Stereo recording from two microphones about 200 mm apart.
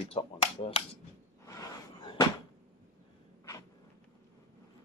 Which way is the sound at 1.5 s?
20° left (ahead or behind).